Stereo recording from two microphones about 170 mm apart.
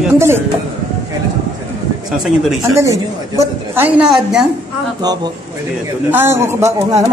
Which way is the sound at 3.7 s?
10° right (ahead or behind).